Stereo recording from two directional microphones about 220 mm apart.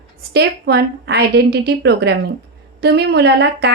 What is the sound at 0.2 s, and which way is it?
Speech, 50° right (ahead or behind).